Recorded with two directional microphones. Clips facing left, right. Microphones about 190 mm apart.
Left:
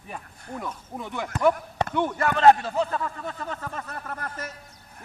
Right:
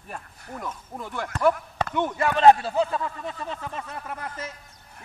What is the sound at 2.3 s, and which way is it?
Speech, 25° right (ahead or behind).